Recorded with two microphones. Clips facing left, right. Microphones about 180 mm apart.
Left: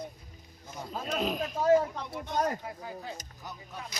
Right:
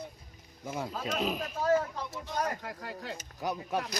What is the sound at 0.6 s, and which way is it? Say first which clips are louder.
Speech: right 3 dB; 75° right (ahead or behind).